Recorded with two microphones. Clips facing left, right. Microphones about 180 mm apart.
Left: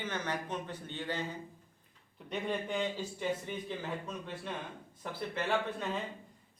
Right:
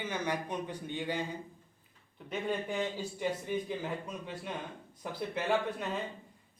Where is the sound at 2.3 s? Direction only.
5° right (ahead or behind).